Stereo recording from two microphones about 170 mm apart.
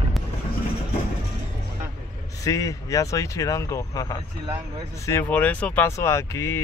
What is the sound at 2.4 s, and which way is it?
Speech, 20° left (ahead or behind).